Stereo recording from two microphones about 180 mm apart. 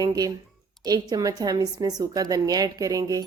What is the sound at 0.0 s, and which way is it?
A woman's voice, 20° right (ahead or behind).